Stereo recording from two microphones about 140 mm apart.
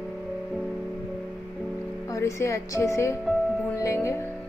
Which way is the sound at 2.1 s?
20° left (ahead or behind).